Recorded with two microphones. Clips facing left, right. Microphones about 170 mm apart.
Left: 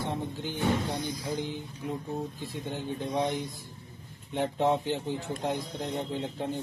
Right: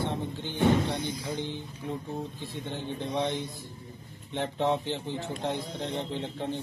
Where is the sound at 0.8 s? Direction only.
25° right (ahead or behind).